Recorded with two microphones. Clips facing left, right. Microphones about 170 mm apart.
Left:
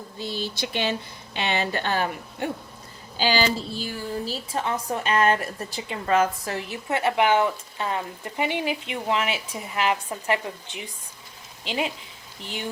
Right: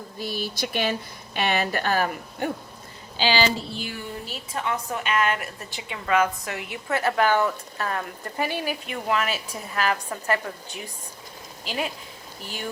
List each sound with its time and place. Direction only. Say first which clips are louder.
0.5 s a woman's voice: right 1 dB; 25° left (ahead or behind)
3.2 s a woman's voice: even; 45° left (ahead or behind); by 11.9 s 25° left (ahead or behind)